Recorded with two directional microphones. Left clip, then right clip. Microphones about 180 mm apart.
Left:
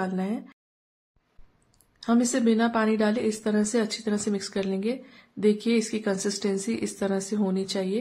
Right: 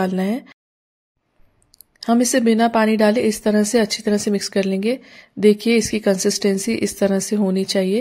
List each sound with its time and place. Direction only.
0.0 s speech: 45° right (ahead or behind)
1.7 s a woman's voice: 35° right (ahead or behind)